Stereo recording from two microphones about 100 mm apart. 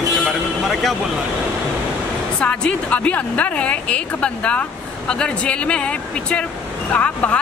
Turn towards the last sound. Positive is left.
turn(degrees=15)  # may be behind; listen again after turning